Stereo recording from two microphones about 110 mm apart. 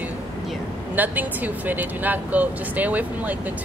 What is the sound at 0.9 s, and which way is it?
Speech, 15° right (ahead or behind).